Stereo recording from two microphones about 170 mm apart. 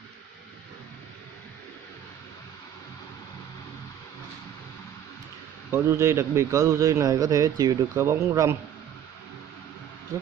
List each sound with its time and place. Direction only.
5.7 s speech: 15° right (ahead or behind)